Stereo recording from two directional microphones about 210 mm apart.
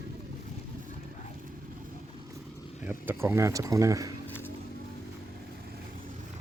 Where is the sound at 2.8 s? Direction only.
10° right (ahead or behind).